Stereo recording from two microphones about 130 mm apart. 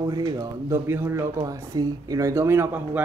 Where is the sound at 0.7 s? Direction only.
20° right (ahead or behind).